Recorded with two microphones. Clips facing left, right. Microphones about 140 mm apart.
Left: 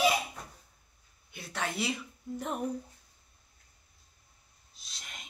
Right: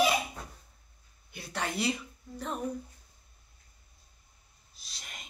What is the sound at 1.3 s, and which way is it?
Speech, centre (ahead or behind).